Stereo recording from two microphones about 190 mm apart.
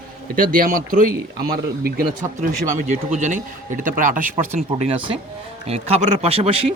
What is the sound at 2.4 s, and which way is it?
Speech, 40° right (ahead or behind).